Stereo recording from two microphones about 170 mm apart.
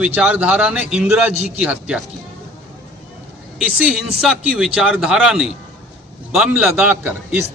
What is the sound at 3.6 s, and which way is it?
A man's voice, centre (ahead or behind).